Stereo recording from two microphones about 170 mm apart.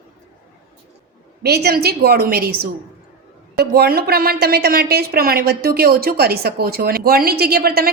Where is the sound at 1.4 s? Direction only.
70° right (ahead or behind).